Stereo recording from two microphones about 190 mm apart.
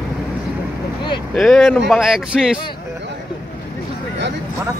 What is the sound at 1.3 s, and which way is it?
Speech, centre (ahead or behind).